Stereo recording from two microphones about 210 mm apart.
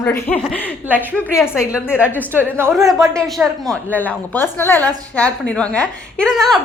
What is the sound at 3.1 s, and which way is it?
A woman's voice, centre (ahead or behind).